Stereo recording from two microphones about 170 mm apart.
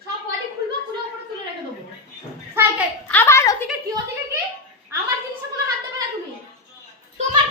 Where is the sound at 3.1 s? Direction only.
15° left (ahead or behind).